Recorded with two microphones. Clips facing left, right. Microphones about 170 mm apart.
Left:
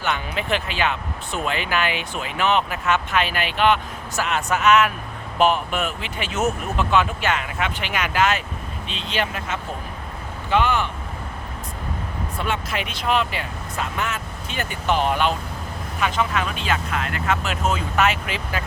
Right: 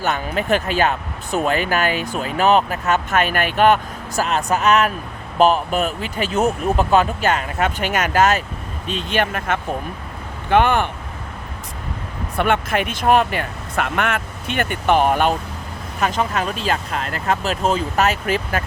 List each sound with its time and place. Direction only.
0.0 s speech: 45° right (ahead or behind)
12.4 s speech: 55° right (ahead or behind)